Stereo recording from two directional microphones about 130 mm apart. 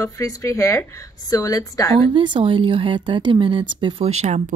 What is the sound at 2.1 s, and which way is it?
A woman's voice, 40° right (ahead or behind).